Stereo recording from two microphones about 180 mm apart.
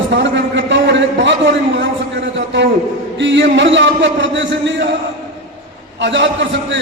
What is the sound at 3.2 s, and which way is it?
A man's voice, 85° right.